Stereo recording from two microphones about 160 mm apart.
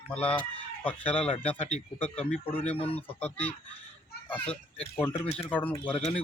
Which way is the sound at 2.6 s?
35° left (ahead or behind).